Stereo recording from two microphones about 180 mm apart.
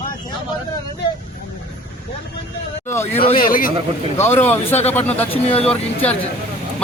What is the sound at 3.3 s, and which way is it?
Speech, 50° left (ahead or behind).